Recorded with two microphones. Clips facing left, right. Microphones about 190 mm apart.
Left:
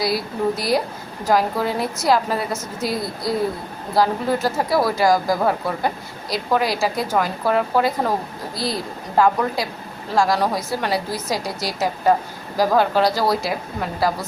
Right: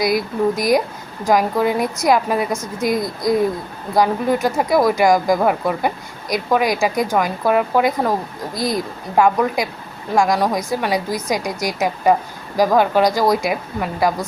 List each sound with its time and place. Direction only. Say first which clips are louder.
0.0 s speech: right 4 dB; 15° right (ahead or behind)